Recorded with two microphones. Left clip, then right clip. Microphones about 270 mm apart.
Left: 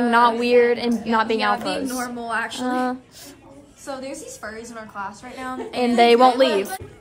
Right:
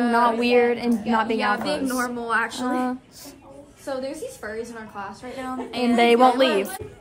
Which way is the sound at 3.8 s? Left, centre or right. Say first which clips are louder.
Right 2 dB; left.